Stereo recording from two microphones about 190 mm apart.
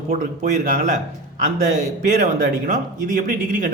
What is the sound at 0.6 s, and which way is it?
Speech, 45° right (ahead or behind).